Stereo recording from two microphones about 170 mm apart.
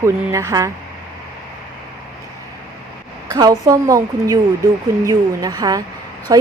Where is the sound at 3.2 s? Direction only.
20° right (ahead or behind).